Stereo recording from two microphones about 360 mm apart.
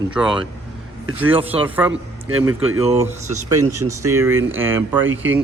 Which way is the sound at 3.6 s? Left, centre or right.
Right.